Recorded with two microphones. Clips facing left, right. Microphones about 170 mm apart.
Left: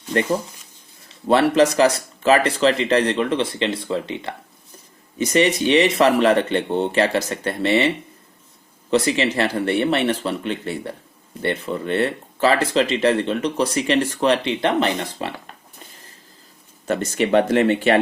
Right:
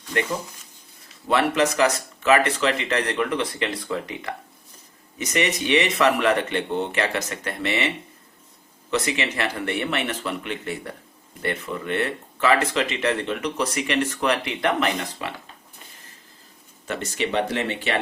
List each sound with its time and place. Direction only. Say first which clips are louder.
0.0 s speech: left 5 dB; 35° left (ahead or behind)
16.8 s speech: left 6 dB; 45° left (ahead or behind)